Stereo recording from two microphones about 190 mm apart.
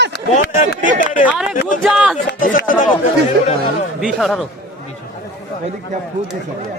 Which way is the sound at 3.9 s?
Centre (ahead or behind).